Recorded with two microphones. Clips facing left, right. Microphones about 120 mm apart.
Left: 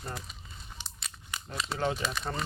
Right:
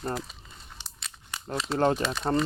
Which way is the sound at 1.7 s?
45° right (ahead or behind).